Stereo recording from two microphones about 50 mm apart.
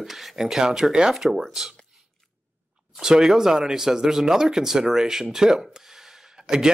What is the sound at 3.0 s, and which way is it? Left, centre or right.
Speech, centre.